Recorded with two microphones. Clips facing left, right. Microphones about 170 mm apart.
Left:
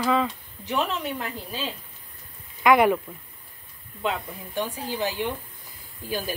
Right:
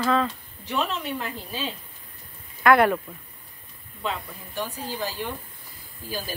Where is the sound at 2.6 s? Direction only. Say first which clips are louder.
Even; 15° left (ahead or behind).